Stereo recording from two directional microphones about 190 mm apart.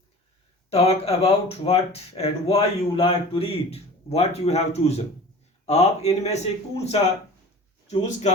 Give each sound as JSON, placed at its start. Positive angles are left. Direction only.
{"t": 0.7, "sound": "speech", "side_deg": 30}